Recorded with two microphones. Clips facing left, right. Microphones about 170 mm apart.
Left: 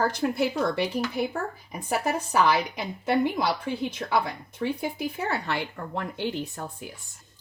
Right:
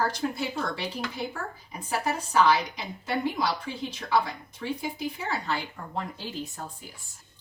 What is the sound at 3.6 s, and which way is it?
Speech, 55° left (ahead or behind).